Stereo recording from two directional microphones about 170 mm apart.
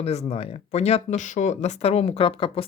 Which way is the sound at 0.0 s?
40° left (ahead or behind).